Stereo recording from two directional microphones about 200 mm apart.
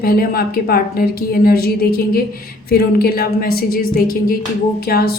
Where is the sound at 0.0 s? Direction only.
50° left (ahead or behind).